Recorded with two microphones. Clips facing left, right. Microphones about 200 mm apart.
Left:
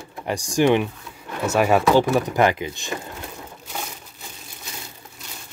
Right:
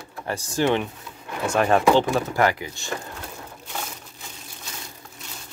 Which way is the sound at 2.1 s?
20° left (ahead or behind).